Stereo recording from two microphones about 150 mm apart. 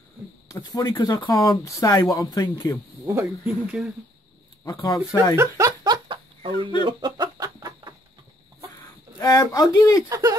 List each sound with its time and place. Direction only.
0.5 s speech: 20° left (ahead or behind)
3.1 s speech: 15° right (ahead or behind)
4.6 s speech: 25° left (ahead or behind)
5.3 s speech: 15° right (ahead or behind)
5.9 s chicken: 35° right (ahead or behind)
9.2 s speech: 20° left (ahead or behind)
10.0 s speech: 20° right (ahead or behind)